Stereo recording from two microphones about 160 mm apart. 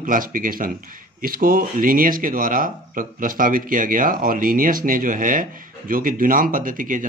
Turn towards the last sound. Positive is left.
turn(degrees=-55)  # may be behind; listen again after turning